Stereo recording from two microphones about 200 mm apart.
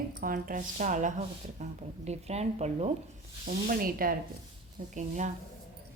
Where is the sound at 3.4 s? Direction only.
45° right (ahead or behind).